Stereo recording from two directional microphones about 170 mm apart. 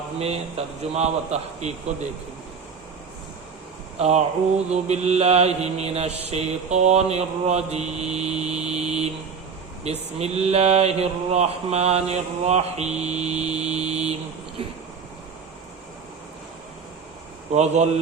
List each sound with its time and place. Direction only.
0.2 s mantra: 35° right (ahead or behind)
3.9 s mantra: 40° right (ahead or behind)
17.5 s mantra: 40° right (ahead or behind)